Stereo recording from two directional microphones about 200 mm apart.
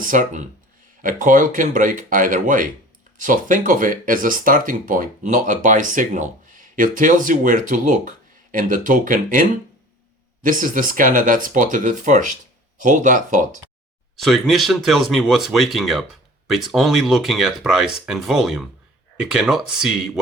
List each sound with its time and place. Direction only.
0.0 s speech: 40° right (ahead or behind)
14.2 s speech: centre (ahead or behind)